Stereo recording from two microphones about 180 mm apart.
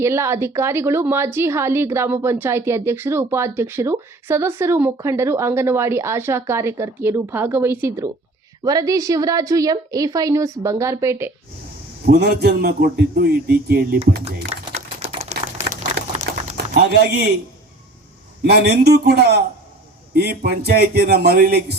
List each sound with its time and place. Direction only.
0.0 s a woman's voice: 15° right (ahead or behind)
12.0 s a man's voice: 65° right (ahead or behind)
15.3 s typewriter: 35° right (ahead or behind)
16.7 s speech: 65° right (ahead or behind)
18.4 s a man's voice: 65° right (ahead or behind)